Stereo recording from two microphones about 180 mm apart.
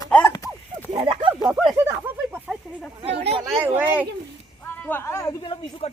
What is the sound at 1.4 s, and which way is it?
Speech, 5° right (ahead or behind).